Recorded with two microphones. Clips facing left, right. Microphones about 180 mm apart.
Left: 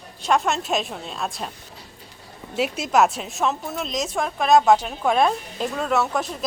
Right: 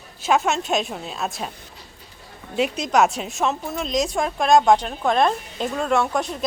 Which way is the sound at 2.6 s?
5° left (ahead or behind).